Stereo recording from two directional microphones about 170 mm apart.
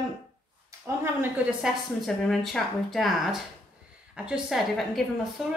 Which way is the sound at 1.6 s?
Centre (ahead or behind).